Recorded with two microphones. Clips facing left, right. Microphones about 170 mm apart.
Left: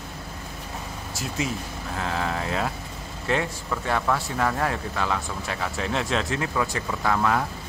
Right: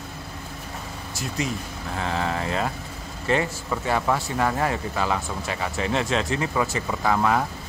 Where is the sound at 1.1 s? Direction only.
Centre (ahead or behind).